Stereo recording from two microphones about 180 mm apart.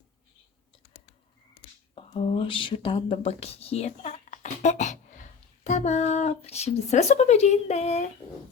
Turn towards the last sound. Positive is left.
turn(degrees=35)  # may be behind; listen again after turning